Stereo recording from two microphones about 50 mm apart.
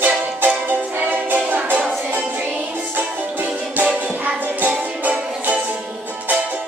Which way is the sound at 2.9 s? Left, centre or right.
Right.